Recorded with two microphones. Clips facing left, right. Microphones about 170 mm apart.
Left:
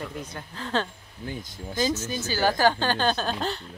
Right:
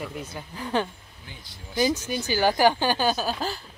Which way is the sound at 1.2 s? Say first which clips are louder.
Left 11 dB; 45° left (ahead or behind).